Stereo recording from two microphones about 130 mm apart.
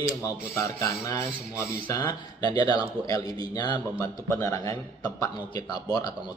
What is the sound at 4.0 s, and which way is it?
A man's voice, 20° left (ahead or behind).